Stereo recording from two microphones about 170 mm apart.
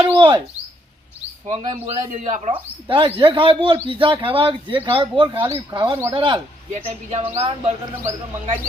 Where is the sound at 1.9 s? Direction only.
45° right (ahead or behind).